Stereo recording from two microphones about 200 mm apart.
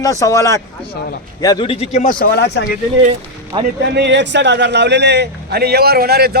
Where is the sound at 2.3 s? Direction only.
55° left (ahead or behind).